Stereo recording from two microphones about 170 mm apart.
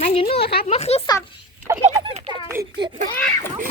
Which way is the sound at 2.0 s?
35° right (ahead or behind).